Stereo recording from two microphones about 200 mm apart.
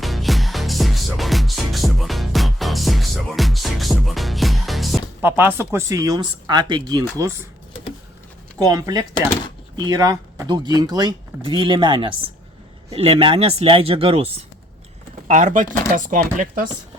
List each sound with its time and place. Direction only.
0.0 s music: centre (ahead or behind); by 7.0 s 20° right (ahead or behind)
8.5 s speech: 20° right (ahead or behind); by 16.6 s 40° right (ahead or behind)